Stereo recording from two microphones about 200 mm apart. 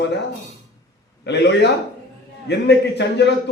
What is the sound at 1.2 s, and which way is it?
A man's voice, 60° left (ahead or behind).